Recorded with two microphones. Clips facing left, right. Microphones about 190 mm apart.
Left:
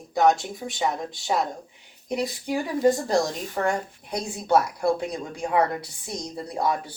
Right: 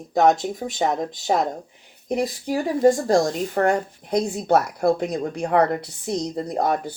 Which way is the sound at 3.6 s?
60° right (ahead or behind).